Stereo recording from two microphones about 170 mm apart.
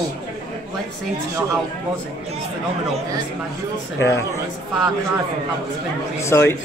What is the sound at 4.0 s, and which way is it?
Speech, 15° left (ahead or behind).